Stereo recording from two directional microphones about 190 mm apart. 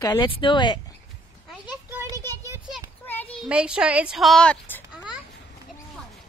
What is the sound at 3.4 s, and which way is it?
A woman's voice, 5° right (ahead or behind).